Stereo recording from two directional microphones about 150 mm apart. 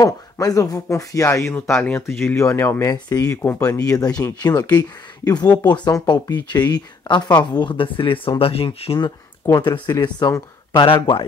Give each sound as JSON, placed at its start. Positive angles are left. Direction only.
{"t": 0.0, "sound": "speech", "side_deg": 25}
{"t": 10.0, "sound": "speech", "side_deg": 25}